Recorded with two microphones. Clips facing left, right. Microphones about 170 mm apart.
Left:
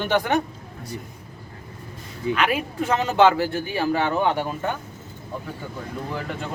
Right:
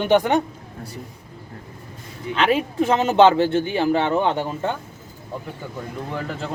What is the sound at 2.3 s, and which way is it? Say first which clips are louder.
Speech: right 7 dB; 25° right (ahead or behind).